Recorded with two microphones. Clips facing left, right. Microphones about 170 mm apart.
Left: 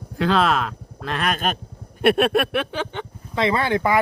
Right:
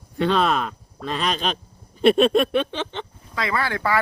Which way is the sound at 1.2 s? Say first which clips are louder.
Left 1 dB; 50° left (ahead or behind).